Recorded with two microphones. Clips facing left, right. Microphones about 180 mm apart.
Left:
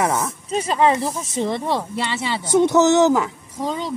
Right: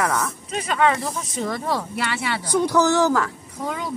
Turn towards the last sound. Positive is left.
turn(degrees=25)  # may be behind; listen again after turning